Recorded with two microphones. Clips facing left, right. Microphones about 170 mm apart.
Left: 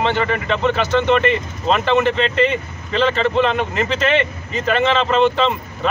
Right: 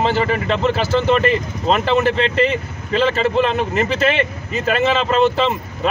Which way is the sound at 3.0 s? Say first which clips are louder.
Left 1 dB; 5° right (ahead or behind).